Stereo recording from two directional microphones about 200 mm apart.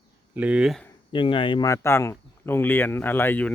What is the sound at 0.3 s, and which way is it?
Speech, 5° right (ahead or behind).